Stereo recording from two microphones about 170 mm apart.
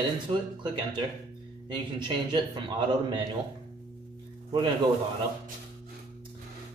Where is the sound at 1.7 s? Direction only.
25° right (ahead or behind).